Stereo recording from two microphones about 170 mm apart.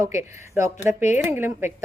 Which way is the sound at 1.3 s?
15° right (ahead or behind).